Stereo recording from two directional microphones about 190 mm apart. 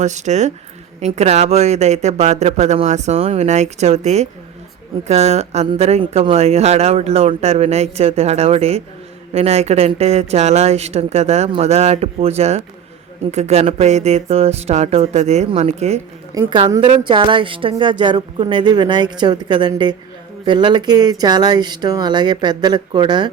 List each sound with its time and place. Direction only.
0.0 s speech: 40° right (ahead or behind)
16.3 s a woman's voice: 20° right (ahead or behind)